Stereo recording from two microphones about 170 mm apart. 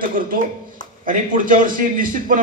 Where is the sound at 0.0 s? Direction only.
55° right (ahead or behind).